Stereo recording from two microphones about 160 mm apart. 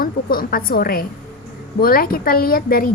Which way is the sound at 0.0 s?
65° left (ahead or behind).